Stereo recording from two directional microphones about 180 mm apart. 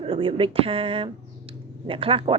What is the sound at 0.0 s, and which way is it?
Speech, 30° right (ahead or behind).